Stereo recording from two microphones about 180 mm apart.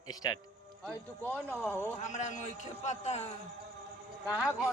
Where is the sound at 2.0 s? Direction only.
40° left (ahead or behind).